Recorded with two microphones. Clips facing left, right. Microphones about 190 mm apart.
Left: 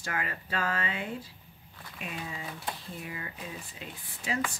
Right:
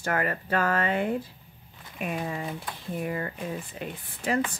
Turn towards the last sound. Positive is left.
turn(degrees=-55)  # may be behind; listen again after turning